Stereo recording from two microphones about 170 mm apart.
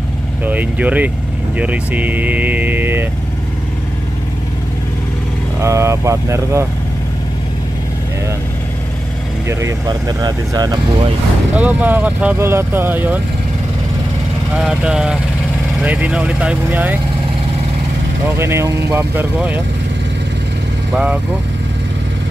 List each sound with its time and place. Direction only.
0.5 s speech: 10° right (ahead or behind)
5.6 s speech: 15° right (ahead or behind)
9.5 s speech: 15° right (ahead or behind)
11.5 s speech: 10° right (ahead or behind)
14.6 s speech: 5° right (ahead or behind)
18.4 s speech: 15° right (ahead or behind)
20.9 s speech: 5° right (ahead or behind)